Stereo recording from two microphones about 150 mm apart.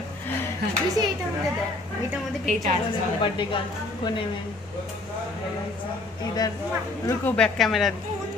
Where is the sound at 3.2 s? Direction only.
35° left (ahead or behind).